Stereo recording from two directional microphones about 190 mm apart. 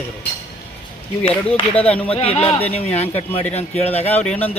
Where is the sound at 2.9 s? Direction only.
35° left (ahead or behind).